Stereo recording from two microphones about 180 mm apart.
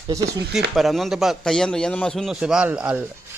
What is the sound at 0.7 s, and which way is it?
A man's voice, centre (ahead or behind).